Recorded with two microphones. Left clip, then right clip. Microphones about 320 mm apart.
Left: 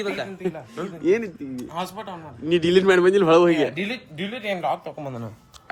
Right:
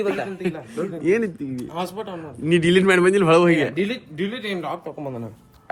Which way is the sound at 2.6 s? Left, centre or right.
Right.